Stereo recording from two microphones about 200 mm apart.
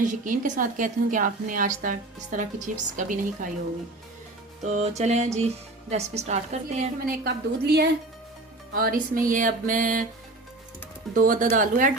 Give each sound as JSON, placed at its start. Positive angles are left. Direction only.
{"t": 0.0, "sound": "a woman's voice", "side_deg": -40}
{"t": 4.6, "sound": "a woman's voice", "side_deg": -35}
{"t": 7.6, "sound": "music", "side_deg": -55}
{"t": 11.1, "sound": "music", "side_deg": -45}
{"t": 11.5, "sound": "a woman's voice", "side_deg": -40}